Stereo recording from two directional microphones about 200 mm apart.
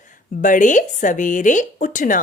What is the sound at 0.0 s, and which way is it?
A woman's voice, 40° left (ahead or behind).